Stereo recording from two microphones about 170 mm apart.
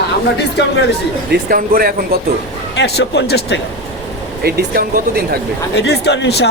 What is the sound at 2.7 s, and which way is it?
Speech, 80° left.